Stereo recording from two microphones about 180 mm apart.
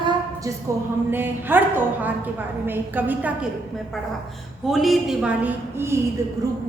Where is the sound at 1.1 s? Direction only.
10° right (ahead or behind).